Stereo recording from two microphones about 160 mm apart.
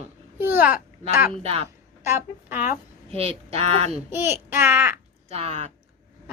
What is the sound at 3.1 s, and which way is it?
Speech, 40° right (ahead or behind).